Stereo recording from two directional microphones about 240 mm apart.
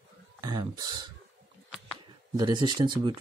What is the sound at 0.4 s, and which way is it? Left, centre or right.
Speech, centre.